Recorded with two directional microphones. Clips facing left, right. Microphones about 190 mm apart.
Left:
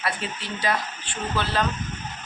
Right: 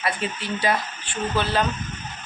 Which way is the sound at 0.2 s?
50° right (ahead or behind).